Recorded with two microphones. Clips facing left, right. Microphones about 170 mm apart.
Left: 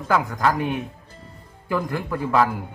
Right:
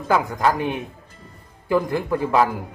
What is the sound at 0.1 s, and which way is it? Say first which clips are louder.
Speech: right 1 dB; 15° right (ahead or behind).